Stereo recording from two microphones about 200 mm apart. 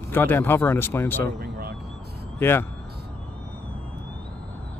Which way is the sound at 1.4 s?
50° right (ahead or behind).